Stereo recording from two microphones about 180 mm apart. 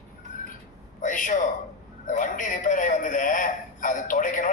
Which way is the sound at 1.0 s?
45° left (ahead or behind).